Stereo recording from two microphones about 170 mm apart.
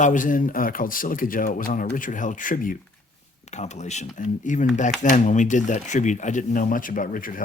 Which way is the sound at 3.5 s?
40° left (ahead or behind).